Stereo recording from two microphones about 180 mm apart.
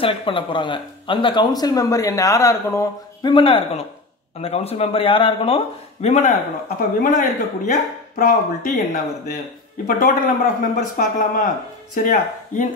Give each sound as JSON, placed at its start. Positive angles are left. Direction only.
{"t": 0.0, "sound": "speech", "side_deg": 30}